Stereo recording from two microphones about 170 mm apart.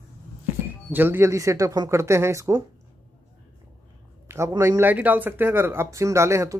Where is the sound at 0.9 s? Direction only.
10° right (ahead or behind).